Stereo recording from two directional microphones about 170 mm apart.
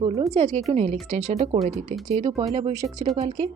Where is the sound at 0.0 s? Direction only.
35° right (ahead or behind).